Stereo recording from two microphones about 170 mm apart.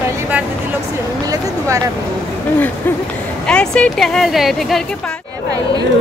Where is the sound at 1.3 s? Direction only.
20° right (ahead or behind).